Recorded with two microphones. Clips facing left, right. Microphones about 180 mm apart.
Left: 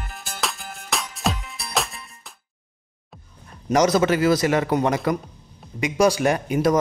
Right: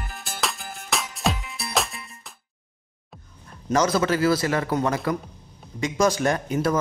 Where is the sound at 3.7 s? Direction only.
20° left (ahead or behind).